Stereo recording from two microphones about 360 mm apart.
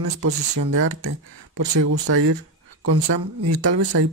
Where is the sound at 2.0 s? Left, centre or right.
Right.